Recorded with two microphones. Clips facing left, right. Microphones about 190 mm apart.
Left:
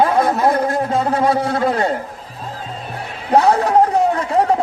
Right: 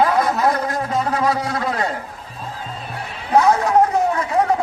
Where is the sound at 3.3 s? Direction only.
35° left (ahead or behind).